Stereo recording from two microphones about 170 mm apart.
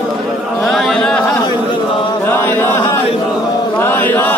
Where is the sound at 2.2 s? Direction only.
10° left (ahead or behind).